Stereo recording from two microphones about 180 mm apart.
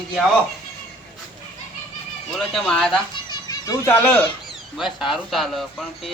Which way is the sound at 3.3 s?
20° left (ahead or behind).